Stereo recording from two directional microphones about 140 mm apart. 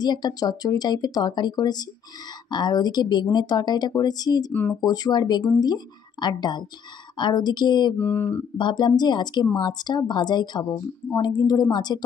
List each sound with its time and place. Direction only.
0.0 s speech: 30° left (ahead or behind)
4.5 s mantra: 10° left (ahead or behind)
4.8 s speech: 30° left (ahead or behind)
8.0 s mantra: 15° left (ahead or behind)
8.5 s speech: 35° left (ahead or behind)